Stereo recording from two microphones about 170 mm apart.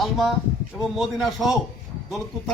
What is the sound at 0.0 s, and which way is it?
A man's voice, centre (ahead or behind).